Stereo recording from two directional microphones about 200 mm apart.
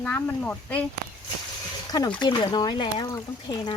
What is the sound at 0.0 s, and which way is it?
Speech, 10° left (ahead or behind).